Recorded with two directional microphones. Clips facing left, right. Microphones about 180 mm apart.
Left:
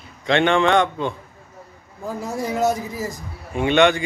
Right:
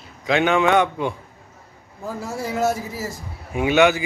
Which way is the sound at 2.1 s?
20° left (ahead or behind).